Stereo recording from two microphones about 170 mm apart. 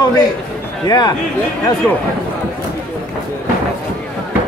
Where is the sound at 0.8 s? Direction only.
25° left (ahead or behind).